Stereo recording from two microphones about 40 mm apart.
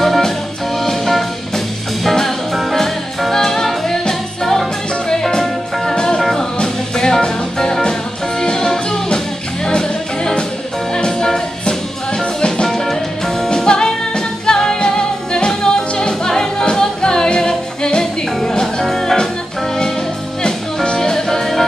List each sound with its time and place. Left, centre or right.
0.0 s music: centre; by 12.6 s left
12.6 s music: centre
13.7 s music: left
20.4 s music: left